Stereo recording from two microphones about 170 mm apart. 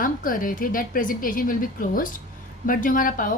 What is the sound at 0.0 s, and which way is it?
A woman's voice, 55° left (ahead or behind).